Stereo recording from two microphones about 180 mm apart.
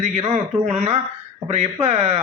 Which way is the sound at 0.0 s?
35° right (ahead or behind).